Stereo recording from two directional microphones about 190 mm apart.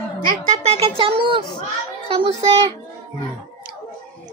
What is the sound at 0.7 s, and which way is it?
Music, 30° right (ahead or behind).